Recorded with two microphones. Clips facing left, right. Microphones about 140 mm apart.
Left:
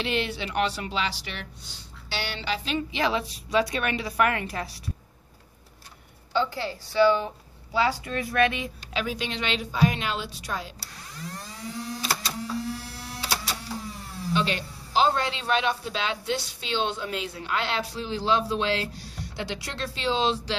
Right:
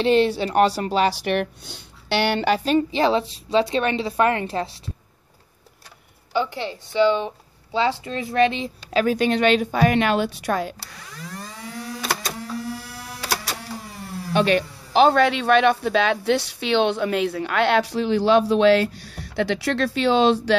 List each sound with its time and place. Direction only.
0.0 s speech: 35° right (ahead or behind)
6.3 s a woman's voice: 15° right (ahead or behind)
8.9 s speech: 50° right (ahead or behind)
12.0 s printer: 50° right (ahead or behind)
13.8 s speech: 60° right (ahead or behind)